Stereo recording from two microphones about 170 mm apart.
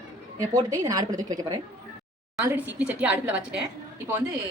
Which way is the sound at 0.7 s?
20° right (ahead or behind).